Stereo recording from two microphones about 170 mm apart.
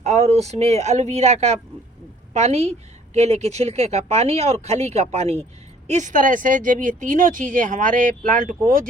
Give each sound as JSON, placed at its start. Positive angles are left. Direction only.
{"t": 0.0, "sound": "speech", "side_deg": -40}